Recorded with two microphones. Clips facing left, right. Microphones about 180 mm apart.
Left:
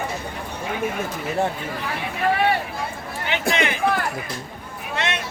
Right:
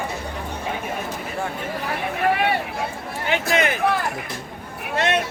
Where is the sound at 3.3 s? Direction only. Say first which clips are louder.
Right 2 dB; 45° right (ahead or behind).